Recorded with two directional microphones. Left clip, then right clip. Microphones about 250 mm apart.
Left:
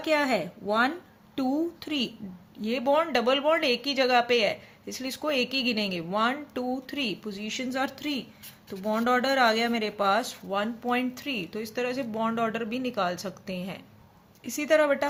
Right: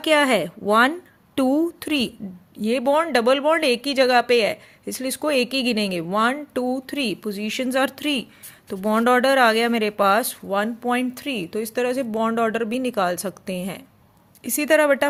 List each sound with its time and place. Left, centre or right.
0.0 s speech: right